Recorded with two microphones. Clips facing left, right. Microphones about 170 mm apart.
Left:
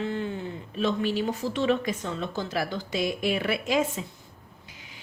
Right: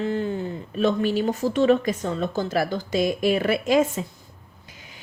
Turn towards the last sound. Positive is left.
turn(degrees=-45)  # may be behind; listen again after turning